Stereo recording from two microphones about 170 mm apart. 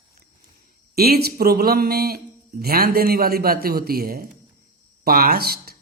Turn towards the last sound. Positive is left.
turn(degrees=-65)  # may be behind; listen again after turning